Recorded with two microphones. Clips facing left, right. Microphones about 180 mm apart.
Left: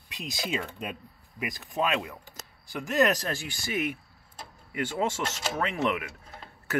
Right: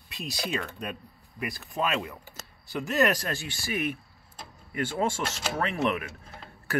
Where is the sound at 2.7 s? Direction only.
15° left (ahead or behind).